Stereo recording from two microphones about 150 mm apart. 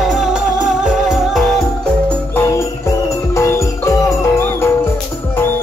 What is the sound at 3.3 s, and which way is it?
Music, 20° left (ahead or behind).